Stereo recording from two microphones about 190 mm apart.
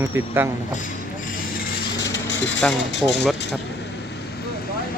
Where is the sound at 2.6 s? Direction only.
5° left (ahead or behind).